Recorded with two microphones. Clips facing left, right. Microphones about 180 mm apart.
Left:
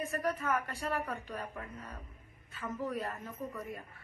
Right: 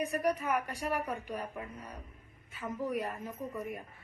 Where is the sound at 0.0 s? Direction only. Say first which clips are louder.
Right 3 dB; 15° right (ahead or behind).